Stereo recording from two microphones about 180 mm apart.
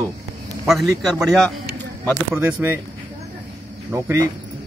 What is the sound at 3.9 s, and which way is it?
Speech, 15° right (ahead or behind).